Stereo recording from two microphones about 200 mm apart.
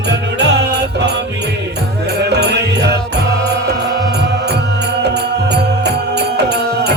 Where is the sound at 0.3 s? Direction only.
60° right (ahead or behind).